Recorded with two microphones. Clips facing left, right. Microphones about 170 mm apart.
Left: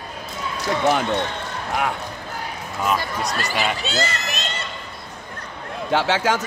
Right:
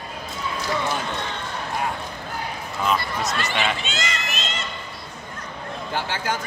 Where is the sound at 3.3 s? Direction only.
40° left (ahead or behind).